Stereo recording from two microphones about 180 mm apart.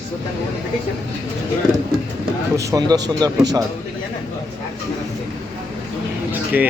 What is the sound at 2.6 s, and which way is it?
Speech, 20° right (ahead or behind).